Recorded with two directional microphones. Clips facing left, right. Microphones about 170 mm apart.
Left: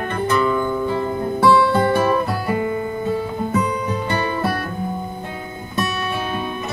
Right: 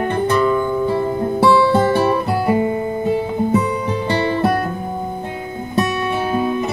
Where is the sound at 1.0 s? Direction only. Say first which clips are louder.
Right 3 dB; 25° right (ahead or behind).